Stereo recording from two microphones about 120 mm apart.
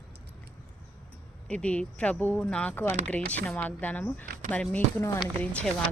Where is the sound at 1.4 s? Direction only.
10° left (ahead or behind).